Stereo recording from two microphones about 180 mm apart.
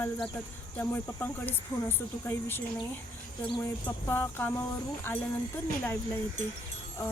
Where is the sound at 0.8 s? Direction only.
10° left (ahead or behind).